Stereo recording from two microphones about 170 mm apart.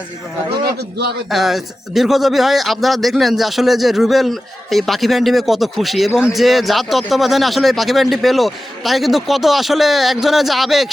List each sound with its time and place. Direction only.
0.5 s a man's voice: 70° right (ahead or behind)
1.3 s speech: centre (ahead or behind)